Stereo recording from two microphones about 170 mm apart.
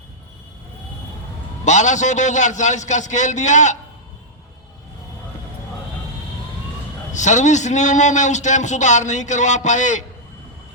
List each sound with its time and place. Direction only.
1.6 s a man's voice: 45° left (ahead or behind)
7.1 s a man's voice: 45° left (ahead or behind)